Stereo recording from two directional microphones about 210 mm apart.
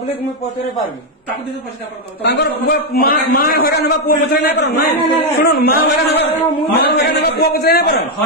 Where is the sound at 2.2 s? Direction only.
50° left (ahead or behind).